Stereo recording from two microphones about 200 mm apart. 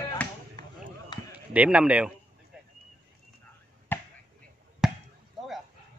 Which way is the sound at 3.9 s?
10° left (ahead or behind).